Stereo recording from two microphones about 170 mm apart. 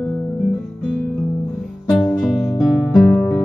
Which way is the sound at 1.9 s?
Centre (ahead or behind).